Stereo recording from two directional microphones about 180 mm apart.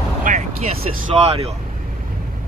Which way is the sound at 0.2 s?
45° right (ahead or behind).